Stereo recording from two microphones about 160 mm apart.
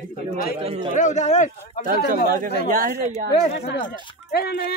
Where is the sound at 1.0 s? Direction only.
50° left (ahead or behind).